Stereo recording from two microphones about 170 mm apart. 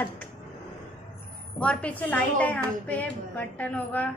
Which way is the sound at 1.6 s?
5° left (ahead or behind).